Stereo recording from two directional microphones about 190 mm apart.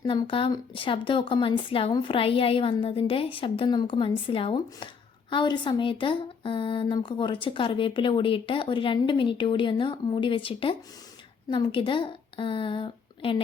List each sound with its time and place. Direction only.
0.0 s a woman's voice: 25° left (ahead or behind)